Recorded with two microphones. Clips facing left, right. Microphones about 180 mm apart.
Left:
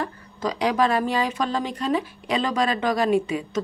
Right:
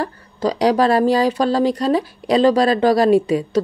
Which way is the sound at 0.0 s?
35° right (ahead or behind).